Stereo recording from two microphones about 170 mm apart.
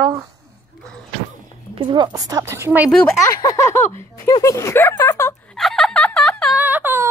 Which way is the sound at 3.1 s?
20° left (ahead or behind).